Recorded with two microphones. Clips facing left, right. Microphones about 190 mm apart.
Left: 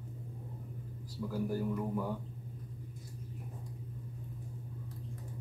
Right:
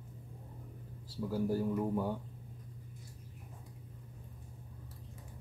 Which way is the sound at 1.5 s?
25° right (ahead or behind).